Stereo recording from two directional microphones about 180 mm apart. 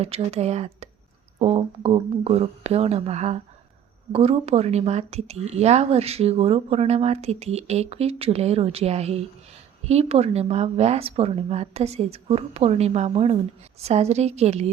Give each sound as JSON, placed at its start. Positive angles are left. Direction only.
{"t": 0.0, "sound": "speech", "side_deg": -35}